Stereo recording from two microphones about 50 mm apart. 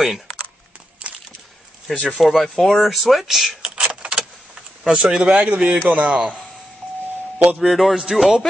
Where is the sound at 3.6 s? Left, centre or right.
Right.